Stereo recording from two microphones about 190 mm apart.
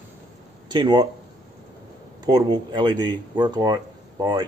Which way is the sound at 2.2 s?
20° right (ahead or behind).